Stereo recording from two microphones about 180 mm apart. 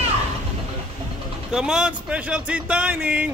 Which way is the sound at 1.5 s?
5° right (ahead or behind).